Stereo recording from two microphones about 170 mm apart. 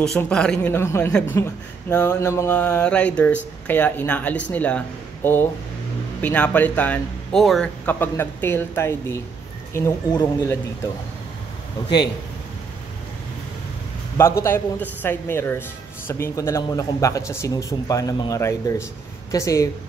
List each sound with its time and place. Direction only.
0.2 s speech: 5° left (ahead or behind)
14.1 s speech: 15° left (ahead or behind)